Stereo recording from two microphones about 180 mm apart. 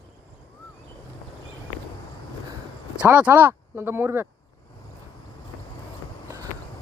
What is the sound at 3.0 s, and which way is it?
Speech, 10° right (ahead or behind).